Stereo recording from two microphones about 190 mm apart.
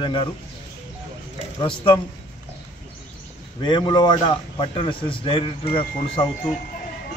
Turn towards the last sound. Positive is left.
turn(degrees=25)  # may be behind; listen again after turning